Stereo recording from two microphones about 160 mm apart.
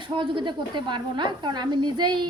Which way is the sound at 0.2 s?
30° right (ahead or behind).